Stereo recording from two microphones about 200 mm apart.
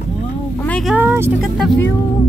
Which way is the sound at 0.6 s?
5° left (ahead or behind).